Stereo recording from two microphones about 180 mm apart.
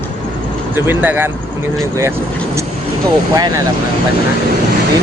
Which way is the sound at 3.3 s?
20° right (ahead or behind).